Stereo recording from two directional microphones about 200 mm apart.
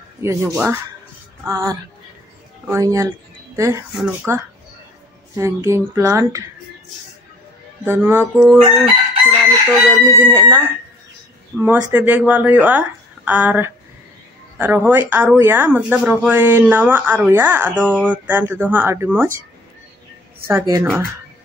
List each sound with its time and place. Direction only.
0.2 s speech: 15° right (ahead or behind)
3.9 s speech: 5° right (ahead or behind)
7.8 s speech: 10° right (ahead or behind)
20.4 s speech: 10° right (ahead or behind)